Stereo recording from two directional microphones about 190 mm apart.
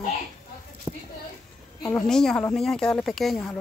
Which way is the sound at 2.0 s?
5° left (ahead or behind).